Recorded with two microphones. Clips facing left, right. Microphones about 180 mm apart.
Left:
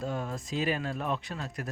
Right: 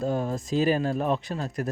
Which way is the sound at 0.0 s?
35° right (ahead or behind).